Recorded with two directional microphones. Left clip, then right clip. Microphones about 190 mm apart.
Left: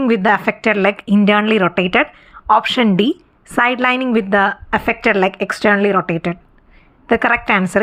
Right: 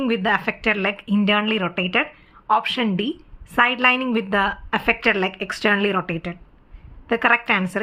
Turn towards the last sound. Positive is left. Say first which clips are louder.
# left 4 dB
turn(degrees=30)  # may be behind; listen again after turning